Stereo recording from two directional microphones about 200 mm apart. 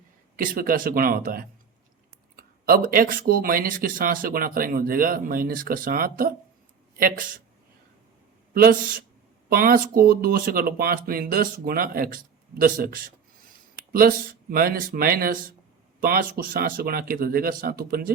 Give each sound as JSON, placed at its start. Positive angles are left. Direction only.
{"t": 0.3, "sound": "speech", "side_deg": -45}
{"t": 8.5, "sound": "speech", "side_deg": -45}